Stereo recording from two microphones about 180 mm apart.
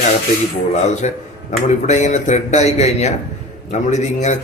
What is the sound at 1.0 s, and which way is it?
A man's voice, 40° left (ahead or behind).